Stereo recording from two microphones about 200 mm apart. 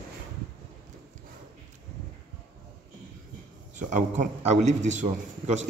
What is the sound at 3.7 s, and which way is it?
A man's voice, 40° right (ahead or behind).